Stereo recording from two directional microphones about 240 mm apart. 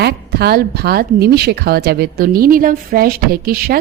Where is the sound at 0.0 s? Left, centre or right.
Right.